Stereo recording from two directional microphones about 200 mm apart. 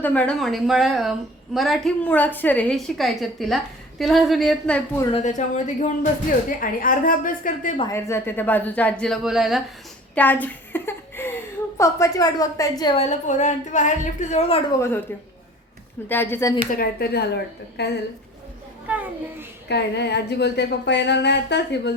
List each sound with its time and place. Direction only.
0.0 s a woman's voice: 10° left (ahead or behind)
5.1 s a woman's voice: 35° left (ahead or behind)
7.8 s a woman's voice: 15° left (ahead or behind)
13.1 s a woman's voice: 35° left (ahead or behind)
14.8 s a woman's voice: 10° left (ahead or behind)
16.0 s a woman's voice: 10° left (ahead or behind)
16.7 s a woman's voice: 50° left (ahead or behind)
18.9 s a sound: 5° right (ahead or behind)
19.6 s speech: 55° left (ahead or behind)